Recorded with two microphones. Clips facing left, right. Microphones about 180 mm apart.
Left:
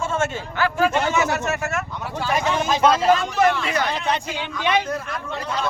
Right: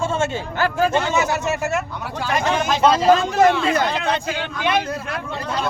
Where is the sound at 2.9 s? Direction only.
30° right (ahead or behind).